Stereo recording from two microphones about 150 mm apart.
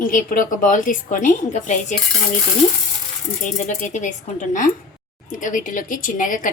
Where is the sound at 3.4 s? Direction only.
55° left (ahead or behind).